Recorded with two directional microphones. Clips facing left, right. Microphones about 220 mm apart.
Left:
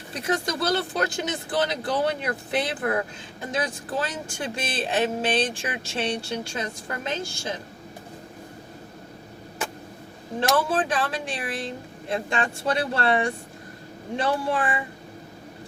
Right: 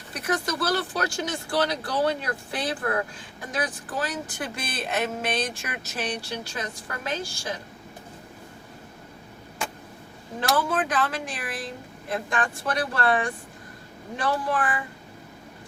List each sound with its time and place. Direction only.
0.1 s speech: 25° left (ahead or behind)
3.5 s speech: 25° left (ahead or behind)
10.4 s speech: 30° left (ahead or behind)